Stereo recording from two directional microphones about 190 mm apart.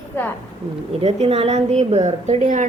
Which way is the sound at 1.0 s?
30° right (ahead or behind).